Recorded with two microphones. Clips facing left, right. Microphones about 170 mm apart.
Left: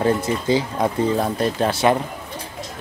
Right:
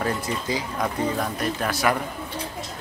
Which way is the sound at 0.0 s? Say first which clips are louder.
Left 7 dB; 25° left (ahead or behind).